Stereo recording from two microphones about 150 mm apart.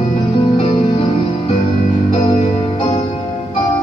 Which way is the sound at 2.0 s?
35° left (ahead or behind).